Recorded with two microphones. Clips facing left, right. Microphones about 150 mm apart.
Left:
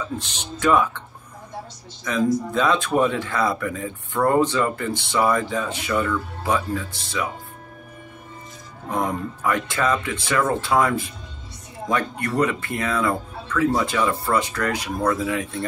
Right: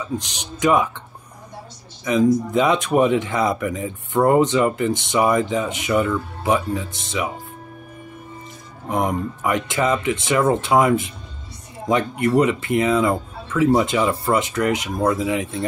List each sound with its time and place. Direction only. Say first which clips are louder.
0.2 s speech: right 2 dB; 15° right (ahead or behind)
2.5 s speech: right 3 dB; 20° right (ahead or behind)
8.9 s speech: right 3 dB; 20° right (ahead or behind)